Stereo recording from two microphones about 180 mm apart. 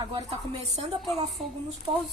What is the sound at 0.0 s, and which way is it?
Speech, 30° right (ahead or behind).